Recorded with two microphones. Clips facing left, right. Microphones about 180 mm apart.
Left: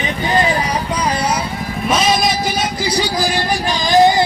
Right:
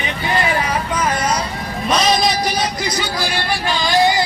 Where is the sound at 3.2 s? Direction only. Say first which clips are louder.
Left 3 dB; 40° left (ahead or behind).